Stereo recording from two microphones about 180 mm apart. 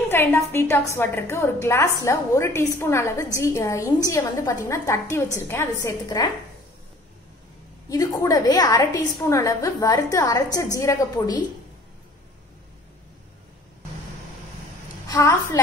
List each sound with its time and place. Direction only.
0.1 s a woman's voice: 10° left (ahead or behind)
7.9 s a woman's voice: 20° left (ahead or behind)
15.0 s a woman's voice: 20° left (ahead or behind)